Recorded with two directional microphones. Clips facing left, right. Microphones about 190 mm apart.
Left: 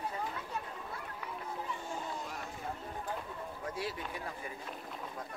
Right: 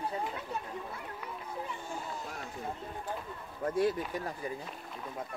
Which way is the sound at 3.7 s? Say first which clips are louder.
Right 11 dB; 50° right (ahead or behind).